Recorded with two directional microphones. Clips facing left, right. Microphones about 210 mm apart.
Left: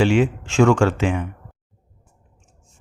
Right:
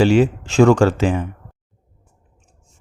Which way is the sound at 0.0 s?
40° right (ahead or behind).